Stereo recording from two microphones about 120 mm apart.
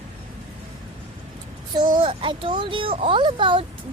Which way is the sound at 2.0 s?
45° right (ahead or behind).